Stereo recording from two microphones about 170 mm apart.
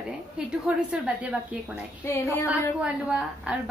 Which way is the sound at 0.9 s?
5° right (ahead or behind).